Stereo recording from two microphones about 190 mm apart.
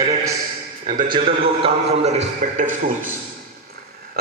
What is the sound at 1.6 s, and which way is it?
A man's voice, 35° right (ahead or behind).